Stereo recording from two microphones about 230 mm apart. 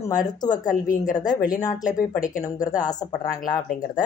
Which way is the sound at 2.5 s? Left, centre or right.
Centre.